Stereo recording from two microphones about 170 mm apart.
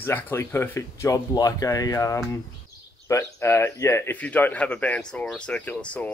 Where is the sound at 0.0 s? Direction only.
15° left (ahead or behind).